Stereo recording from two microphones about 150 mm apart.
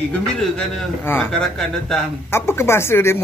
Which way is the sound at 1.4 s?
5° left (ahead or behind).